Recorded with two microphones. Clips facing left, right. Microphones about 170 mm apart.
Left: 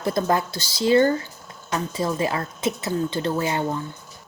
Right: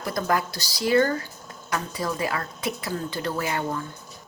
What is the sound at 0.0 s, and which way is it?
A woman's voice, 25° left (ahead or behind).